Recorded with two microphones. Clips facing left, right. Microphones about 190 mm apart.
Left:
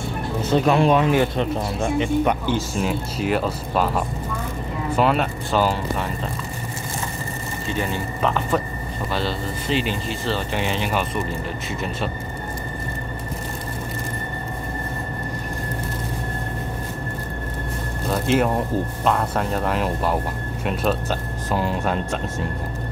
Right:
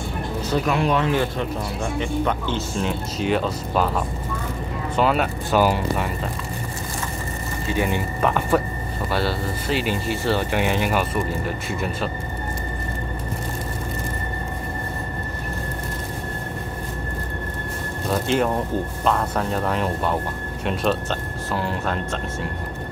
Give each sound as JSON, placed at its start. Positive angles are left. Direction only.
{"t": 0.5, "sound": "speech", "side_deg": 25}
{"t": 0.9, "sound": "speech", "side_deg": 15}
{"t": 7.7, "sound": "speech", "side_deg": -10}
{"t": 18.1, "sound": "music", "side_deg": 5}
{"t": 19.0, "sound": "speech", "side_deg": 0}
{"t": 21.5, "sound": "speech", "side_deg": 15}